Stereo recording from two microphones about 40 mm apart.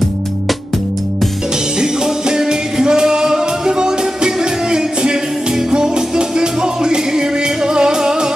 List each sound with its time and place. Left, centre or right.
1.8 s music: centre